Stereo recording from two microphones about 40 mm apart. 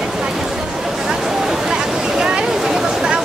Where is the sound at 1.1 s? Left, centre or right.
Centre.